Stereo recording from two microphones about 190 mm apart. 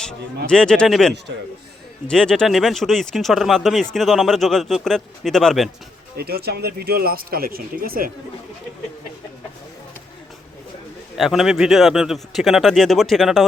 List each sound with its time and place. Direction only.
0.4 s speech: 5° left (ahead or behind)
6.1 s speech: 55° right (ahead or behind)
11.2 s speech: centre (ahead or behind)